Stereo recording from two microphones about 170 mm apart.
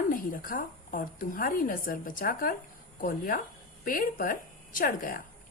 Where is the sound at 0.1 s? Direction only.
55° left (ahead or behind).